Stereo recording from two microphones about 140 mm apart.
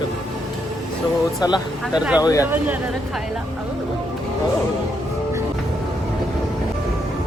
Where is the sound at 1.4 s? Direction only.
30° left (ahead or behind).